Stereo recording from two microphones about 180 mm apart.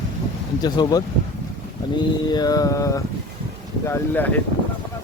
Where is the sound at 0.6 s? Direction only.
20° left (ahead or behind).